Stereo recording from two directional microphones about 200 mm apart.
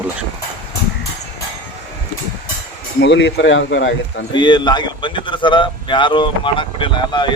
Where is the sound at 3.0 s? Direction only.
60° left (ahead or behind).